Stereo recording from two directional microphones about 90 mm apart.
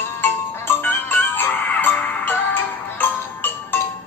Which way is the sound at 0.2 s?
25° left (ahead or behind).